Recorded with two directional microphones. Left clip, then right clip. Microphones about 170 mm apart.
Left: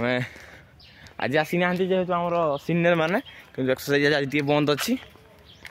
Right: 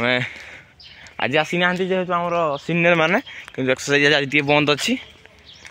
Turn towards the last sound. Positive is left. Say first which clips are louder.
# right 5 dB
turn(degrees=-20)  # may be behind; listen again after turning